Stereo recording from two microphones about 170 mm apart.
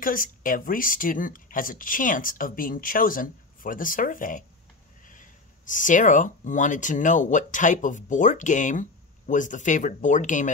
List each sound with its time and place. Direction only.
0.0 s speech: 55° left (ahead or behind)